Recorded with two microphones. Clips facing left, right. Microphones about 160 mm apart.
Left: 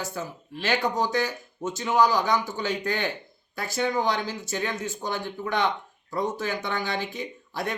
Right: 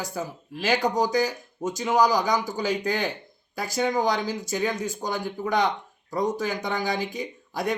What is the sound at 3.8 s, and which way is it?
Speech, 40° right (ahead or behind).